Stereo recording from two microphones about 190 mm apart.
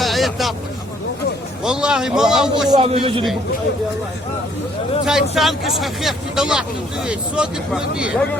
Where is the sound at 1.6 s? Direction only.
5° right (ahead or behind).